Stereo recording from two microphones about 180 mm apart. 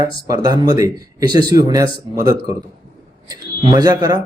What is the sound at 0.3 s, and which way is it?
Speech, 20° right (ahead or behind).